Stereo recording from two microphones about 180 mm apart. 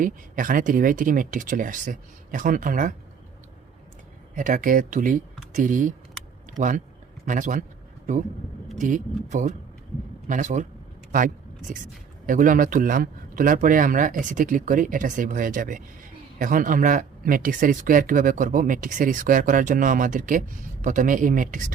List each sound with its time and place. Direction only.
0.0 s speech: 50° right (ahead or behind)
4.4 s speech: 45° right (ahead or behind)
8.8 s speech: 45° right (ahead or behind)
11.7 s speech: 50° right (ahead or behind)